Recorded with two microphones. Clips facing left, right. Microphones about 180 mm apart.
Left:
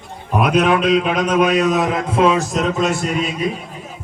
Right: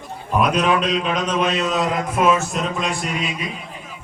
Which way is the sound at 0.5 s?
5° left (ahead or behind).